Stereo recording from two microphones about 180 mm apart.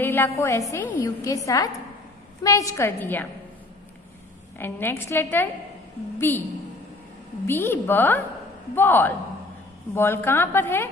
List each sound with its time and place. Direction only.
0.0 s a woman's voice: 10° left (ahead or behind)
4.6 s a woman's voice: 10° left (ahead or behind)
7.4 s a woman's voice: 10° left (ahead or behind)